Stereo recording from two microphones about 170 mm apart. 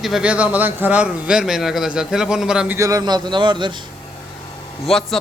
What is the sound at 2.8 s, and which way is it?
Speech, 20° right (ahead or behind).